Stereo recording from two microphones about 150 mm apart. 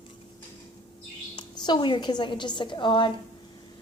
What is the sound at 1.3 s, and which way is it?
A woman's voice, 30° left (ahead or behind).